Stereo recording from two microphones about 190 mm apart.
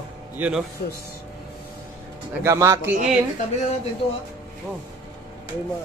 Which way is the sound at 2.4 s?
15° right (ahead or behind).